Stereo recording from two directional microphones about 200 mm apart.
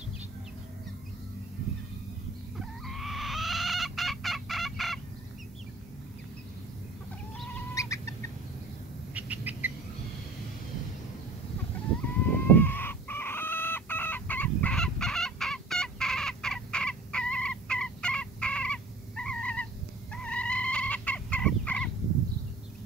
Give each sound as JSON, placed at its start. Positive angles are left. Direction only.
{"t": 2.9, "sound": "fowl", "side_deg": 0}
{"t": 7.7, "sound": "chicken", "side_deg": 15}
{"t": 9.1, "sound": "bird", "side_deg": -10}
{"t": 12.3, "sound": "chicken", "side_deg": 10}